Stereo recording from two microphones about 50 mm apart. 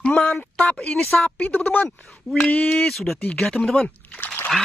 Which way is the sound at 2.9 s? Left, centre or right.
Centre.